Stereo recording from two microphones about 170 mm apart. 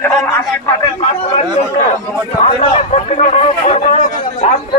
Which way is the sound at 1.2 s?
40° left (ahead or behind).